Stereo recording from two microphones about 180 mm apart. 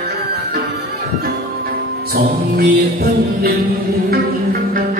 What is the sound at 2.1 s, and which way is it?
Music, 55° right (ahead or behind).